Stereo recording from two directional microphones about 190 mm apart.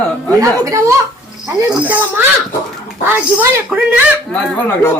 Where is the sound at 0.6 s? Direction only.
15° right (ahead or behind).